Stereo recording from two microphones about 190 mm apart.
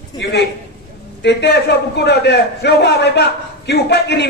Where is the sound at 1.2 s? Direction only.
65° left (ahead or behind).